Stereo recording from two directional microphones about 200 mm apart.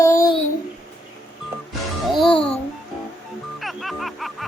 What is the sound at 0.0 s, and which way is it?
Babbling, 15° left (ahead or behind).